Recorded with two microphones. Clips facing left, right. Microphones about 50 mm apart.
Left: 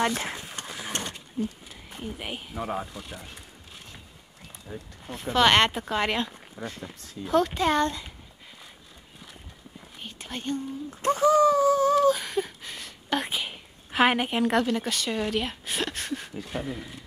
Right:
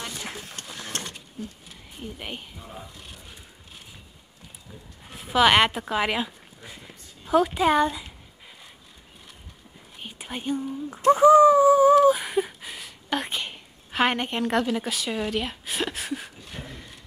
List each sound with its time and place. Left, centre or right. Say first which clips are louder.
0.6 s sewing machine: left 2 dB; centre
1.4 s speech: left 8 dB; left
2.1 s speech: right 1 dB; centre
2.5 s speech: left 10 dB; left
5.0 s speech: right 2 dB; centre
10.0 s speech: right 2 dB; centre
11.1 s a sound: right 6 dB; centre
16.5 s speech: left 8 dB; centre